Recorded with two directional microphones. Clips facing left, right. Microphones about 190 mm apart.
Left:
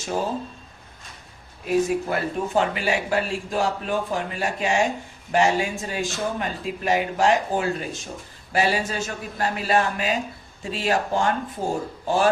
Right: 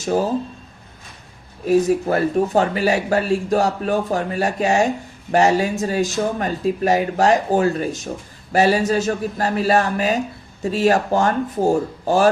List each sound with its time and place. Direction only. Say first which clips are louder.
1.6 s a man's voice: right 6 dB; 40° right (ahead or behind)